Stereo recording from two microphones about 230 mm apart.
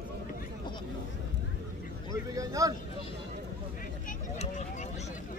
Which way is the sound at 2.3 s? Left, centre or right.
Centre.